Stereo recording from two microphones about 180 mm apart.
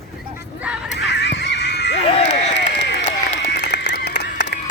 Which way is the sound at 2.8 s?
70° left (ahead or behind).